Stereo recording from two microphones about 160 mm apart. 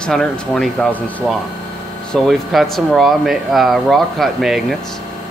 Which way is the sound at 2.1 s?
Centre (ahead or behind).